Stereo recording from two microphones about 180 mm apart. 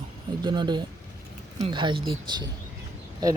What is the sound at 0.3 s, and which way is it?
Speech, 25° right (ahead or behind).